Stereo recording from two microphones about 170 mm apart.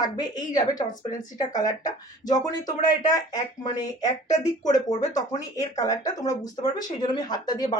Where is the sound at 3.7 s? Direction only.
20° left (ahead or behind).